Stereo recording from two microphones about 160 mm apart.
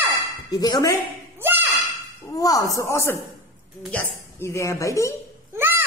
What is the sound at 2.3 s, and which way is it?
Speech, 20° left (ahead or behind).